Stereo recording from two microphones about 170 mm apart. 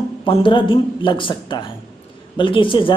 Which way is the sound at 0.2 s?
30° left (ahead or behind).